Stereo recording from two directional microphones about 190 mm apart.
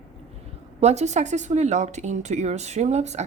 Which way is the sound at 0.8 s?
35° right (ahead or behind).